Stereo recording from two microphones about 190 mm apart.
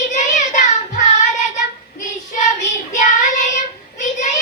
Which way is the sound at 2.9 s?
40° left (ahead or behind).